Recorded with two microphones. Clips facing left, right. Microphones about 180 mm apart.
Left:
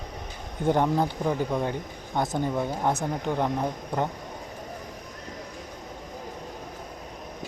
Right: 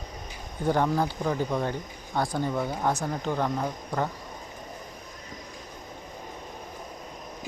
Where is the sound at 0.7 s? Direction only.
20° left (ahead or behind).